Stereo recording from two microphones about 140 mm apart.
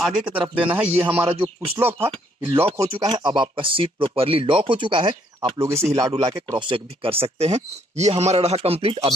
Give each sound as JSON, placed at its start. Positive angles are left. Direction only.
{"t": 0.0, "sound": "speech", "side_deg": -10}
{"t": 1.3, "sound": "speech", "side_deg": -40}
{"t": 1.8, "sound": "speech", "side_deg": -15}
{"t": 2.8, "sound": "speech", "side_deg": -30}
{"t": 5.6, "sound": "speech", "side_deg": -20}